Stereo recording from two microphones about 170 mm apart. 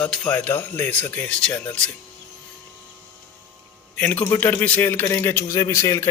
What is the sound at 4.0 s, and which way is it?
Speech, 10° left (ahead or behind).